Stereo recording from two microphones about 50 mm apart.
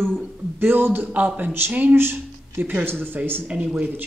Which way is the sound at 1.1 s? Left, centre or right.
Right.